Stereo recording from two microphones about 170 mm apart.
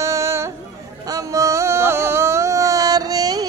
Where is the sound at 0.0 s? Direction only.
20° right (ahead or behind).